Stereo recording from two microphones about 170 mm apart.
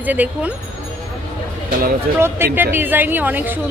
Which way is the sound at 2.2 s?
15° right (ahead or behind).